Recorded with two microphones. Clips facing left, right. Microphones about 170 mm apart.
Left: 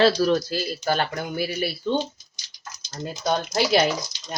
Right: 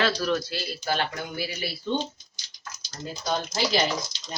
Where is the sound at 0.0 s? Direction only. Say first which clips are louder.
Left 7 dB; 35° left (ahead or behind).